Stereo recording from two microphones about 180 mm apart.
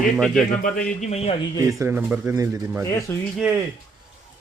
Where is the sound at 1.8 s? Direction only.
10° right (ahead or behind).